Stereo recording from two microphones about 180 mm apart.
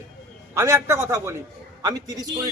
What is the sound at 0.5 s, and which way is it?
A man's voice, 15° right (ahead or behind).